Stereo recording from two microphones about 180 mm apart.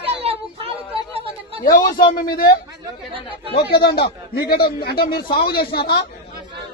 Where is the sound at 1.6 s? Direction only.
50° left (ahead or behind).